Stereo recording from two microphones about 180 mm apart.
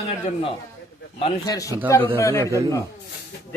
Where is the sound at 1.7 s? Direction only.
15° right (ahead or behind).